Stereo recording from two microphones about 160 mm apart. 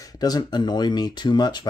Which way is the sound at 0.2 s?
25° left (ahead or behind).